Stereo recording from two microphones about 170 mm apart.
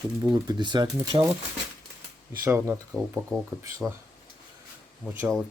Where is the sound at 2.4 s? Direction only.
15° right (ahead or behind).